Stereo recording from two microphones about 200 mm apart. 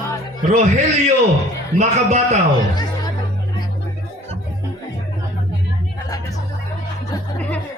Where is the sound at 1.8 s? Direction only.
35° right (ahead or behind).